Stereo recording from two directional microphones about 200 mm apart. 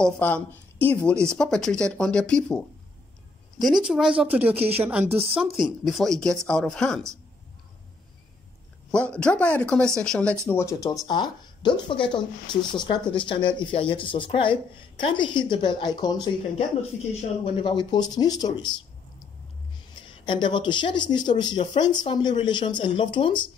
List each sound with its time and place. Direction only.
0.0 s speech: 10° left (ahead or behind); by 5.0 s 10° right (ahead or behind)
5.0 s speech: 30° right (ahead or behind)
5.3 s speech: 5° right (ahead or behind)
8.9 s speech: 5° left (ahead or behind)
20.0 s speech: 25° left (ahead or behind)